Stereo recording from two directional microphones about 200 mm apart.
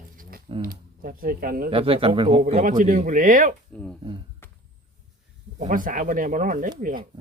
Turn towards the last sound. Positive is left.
turn(degrees=-40)  # may be behind; listen again after turning